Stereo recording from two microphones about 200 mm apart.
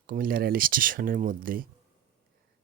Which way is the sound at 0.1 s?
45° right (ahead or behind).